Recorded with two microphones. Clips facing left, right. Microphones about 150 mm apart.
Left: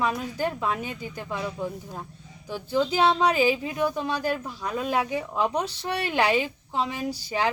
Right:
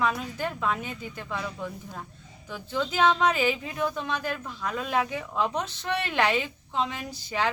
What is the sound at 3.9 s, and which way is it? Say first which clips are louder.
Speech: left 4 dB; 35° left (ahead or behind).